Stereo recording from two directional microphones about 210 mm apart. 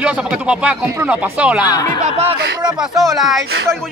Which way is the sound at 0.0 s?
5° right (ahead or behind).